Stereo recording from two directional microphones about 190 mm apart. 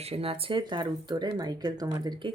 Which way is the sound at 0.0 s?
30° right (ahead or behind).